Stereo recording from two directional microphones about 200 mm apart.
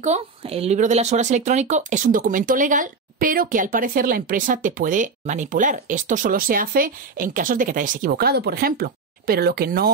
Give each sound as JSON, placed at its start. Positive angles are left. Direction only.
{"t": 0.0, "sound": "a woman's voice", "side_deg": -30}